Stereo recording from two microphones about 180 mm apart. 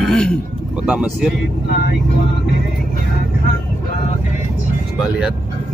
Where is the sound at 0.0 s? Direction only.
5° left (ahead or behind).